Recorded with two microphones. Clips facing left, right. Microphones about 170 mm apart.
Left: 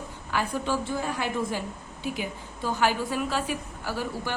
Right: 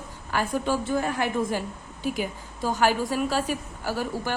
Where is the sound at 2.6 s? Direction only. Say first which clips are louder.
Right 3 dB; 40° right (ahead or behind).